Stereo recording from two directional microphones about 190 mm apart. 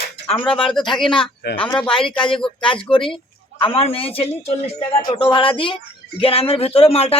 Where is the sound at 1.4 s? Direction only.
60° left (ahead or behind).